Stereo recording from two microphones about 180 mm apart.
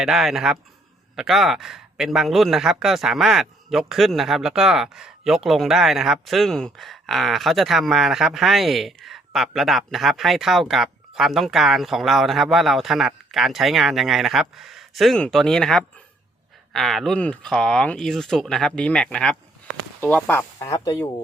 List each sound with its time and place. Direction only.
0.0 s a man's voice: centre (ahead or behind)
20.6 s speech: 20° left (ahead or behind)